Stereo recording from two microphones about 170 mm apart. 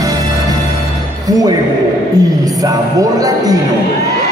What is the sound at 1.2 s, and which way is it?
Speech, 20° right (ahead or behind).